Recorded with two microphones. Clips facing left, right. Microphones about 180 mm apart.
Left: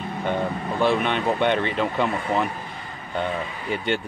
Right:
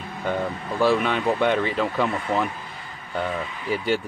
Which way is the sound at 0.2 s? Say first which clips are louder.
Left 1 dB; 25° left (ahead or behind).